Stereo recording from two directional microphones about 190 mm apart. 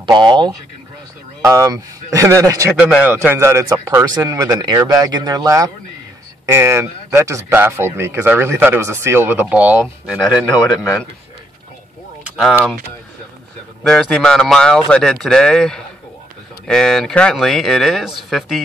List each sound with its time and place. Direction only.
0.0 s speech: 25° right (ahead or behind)
2.7 s speech: 5° right (ahead or behind)
12.4 s speech: centre (ahead or behind)
13.8 s speech: 5° left (ahead or behind)